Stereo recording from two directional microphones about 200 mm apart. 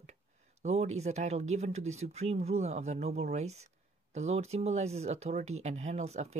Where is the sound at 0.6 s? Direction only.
35° right (ahead or behind).